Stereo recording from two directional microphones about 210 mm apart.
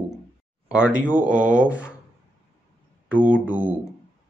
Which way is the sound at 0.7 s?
5° right (ahead or behind).